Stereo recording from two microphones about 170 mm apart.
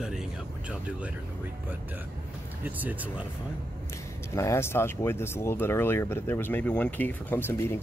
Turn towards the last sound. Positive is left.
turn(degrees=15)  # may be behind; listen again after turning